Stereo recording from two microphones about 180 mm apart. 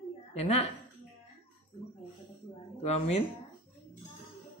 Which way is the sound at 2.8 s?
35° left (ahead or behind).